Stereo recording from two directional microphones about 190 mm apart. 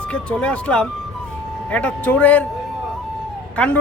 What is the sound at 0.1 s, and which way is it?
A man's voice, 5° left (ahead or behind).